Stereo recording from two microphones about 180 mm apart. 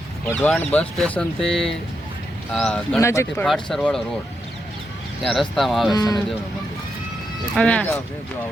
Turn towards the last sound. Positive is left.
turn(degrees=5)  # may be behind; listen again after turning